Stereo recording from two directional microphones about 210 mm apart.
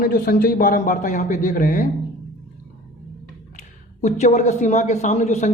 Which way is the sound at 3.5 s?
35° left (ahead or behind).